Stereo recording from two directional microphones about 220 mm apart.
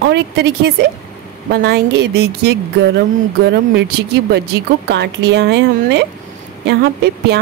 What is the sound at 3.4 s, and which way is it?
Speech, 50° right (ahead or behind).